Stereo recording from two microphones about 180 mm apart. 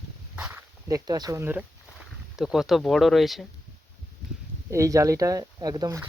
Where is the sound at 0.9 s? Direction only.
20° right (ahead or behind); by 3.4 s centre (ahead or behind).